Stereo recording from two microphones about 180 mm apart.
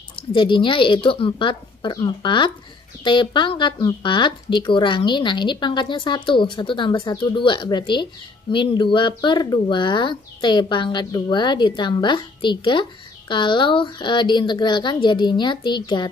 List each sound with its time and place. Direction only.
0.3 s speech: 25° left (ahead or behind)